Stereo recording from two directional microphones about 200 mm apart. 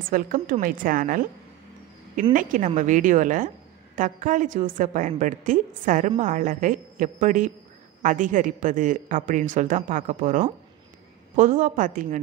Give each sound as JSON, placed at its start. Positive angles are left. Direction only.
{"t": 0.1, "sound": "a woman's voice", "side_deg": -45}
{"t": 2.3, "sound": "a woman's voice", "side_deg": -40}